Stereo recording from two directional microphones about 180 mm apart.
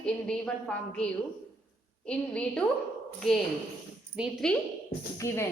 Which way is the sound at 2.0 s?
5° left (ahead or behind).